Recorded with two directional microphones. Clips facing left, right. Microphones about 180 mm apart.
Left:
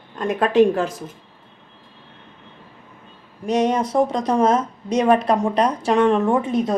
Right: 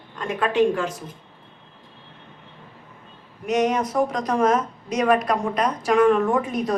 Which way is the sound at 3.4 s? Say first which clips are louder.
Left 2 dB; 30° left (ahead or behind).